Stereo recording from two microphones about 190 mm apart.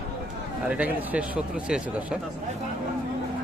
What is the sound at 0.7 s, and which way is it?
Speech, 5° right (ahead or behind).